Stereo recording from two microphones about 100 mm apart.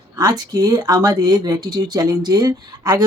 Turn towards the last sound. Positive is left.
turn(degrees=-40)  # may be behind; listen again after turning